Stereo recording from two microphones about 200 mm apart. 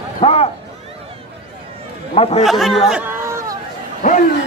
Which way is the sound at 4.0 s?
40° left (ahead or behind).